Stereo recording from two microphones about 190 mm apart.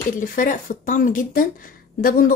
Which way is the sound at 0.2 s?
45° left (ahead or behind).